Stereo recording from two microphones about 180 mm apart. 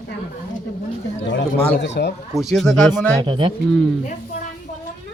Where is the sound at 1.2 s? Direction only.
75° left (ahead or behind).